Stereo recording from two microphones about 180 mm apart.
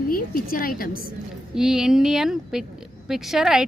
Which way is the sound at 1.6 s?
5° right (ahead or behind).